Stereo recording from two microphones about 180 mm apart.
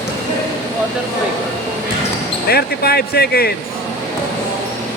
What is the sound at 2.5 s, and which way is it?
Speech, 60° left (ahead or behind).